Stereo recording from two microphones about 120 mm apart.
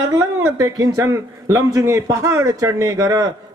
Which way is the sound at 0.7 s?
25° right (ahead or behind).